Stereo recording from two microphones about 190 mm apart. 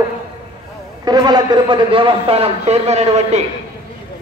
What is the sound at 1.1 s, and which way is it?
A man's voice, 20° right (ahead or behind).